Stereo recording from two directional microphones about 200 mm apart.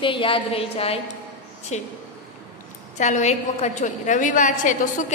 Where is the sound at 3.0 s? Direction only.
35° left (ahead or behind).